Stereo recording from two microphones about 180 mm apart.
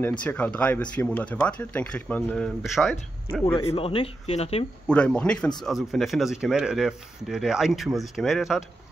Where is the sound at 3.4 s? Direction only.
15° left (ahead or behind).